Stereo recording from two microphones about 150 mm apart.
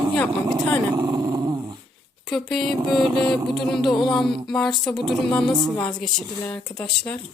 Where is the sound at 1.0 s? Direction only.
25° right (ahead or behind).